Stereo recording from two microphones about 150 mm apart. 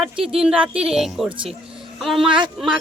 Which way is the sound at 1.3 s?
35° right (ahead or behind).